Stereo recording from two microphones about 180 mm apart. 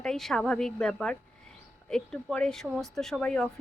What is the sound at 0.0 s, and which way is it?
Speech, centre (ahead or behind).